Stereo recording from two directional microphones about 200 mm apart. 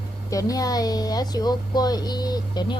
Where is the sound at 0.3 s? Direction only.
15° left (ahead or behind).